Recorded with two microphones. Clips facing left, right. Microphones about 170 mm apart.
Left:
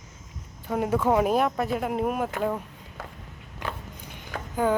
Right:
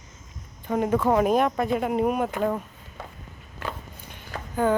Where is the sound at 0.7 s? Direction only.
5° left (ahead or behind).